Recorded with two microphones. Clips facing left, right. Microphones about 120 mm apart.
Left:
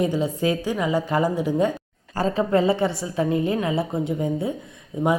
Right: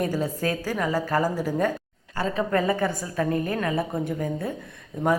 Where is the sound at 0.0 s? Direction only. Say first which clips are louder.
Left 4 dB; 20° left (ahead or behind).